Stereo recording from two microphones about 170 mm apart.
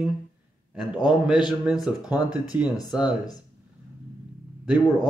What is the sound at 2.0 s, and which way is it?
Speech, 25° left (ahead or behind).